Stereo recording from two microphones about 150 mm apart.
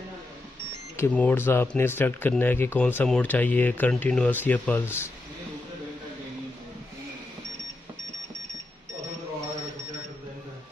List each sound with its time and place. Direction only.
0.9 s speech: 10° left (ahead or behind)